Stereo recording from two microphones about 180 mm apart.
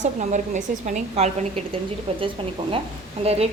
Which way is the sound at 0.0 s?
40° right (ahead or behind).